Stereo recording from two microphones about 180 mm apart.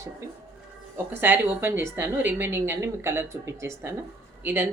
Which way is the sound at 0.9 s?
10° right (ahead or behind).